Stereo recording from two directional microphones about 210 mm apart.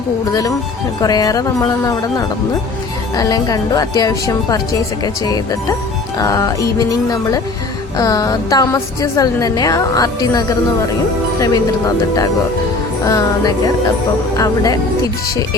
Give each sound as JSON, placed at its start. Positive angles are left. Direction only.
{"t": 0.3, "sound": "a woman's voice", "side_deg": 15}
{"t": 13.1, "sound": "a woman's voice", "side_deg": 15}